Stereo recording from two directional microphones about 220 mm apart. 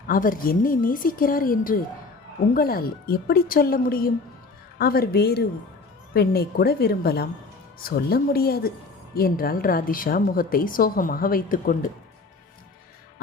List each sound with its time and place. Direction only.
0.1 s a woman's voice: 40° left (ahead or behind)